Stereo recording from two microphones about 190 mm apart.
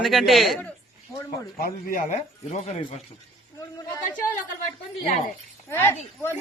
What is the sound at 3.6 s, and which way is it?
Speech, 15° left (ahead or behind).